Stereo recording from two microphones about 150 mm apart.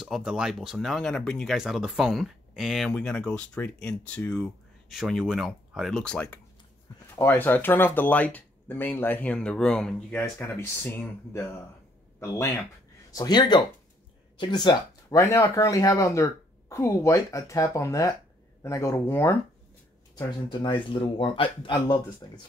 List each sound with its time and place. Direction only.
0.0 s speech: 5° right (ahead or behind)
10.4 s speech: 15° left (ahead or behind)
20.2 s speech: 30° left (ahead or behind)